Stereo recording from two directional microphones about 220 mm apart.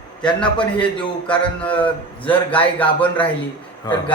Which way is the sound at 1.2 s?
5° left (ahead or behind).